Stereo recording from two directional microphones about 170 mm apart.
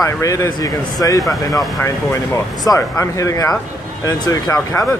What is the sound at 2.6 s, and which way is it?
Speech, 20° left (ahead or behind).